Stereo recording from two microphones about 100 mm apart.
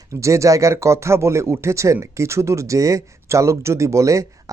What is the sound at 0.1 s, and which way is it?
Speech, 30° right (ahead or behind).